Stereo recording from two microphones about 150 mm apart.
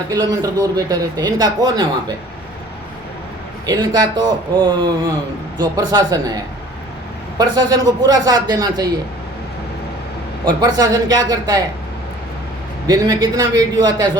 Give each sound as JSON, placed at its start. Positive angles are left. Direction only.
{"t": 0.1, "sound": "speech", "side_deg": -25}
{"t": 3.7, "sound": "speech", "side_deg": -25}
{"t": 10.4, "sound": "speech", "side_deg": -25}
{"t": 12.9, "sound": "speech", "side_deg": -25}